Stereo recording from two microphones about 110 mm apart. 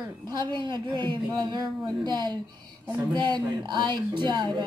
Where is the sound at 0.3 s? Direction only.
45° right (ahead or behind).